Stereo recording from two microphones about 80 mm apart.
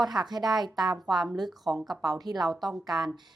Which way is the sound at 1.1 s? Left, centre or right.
Centre.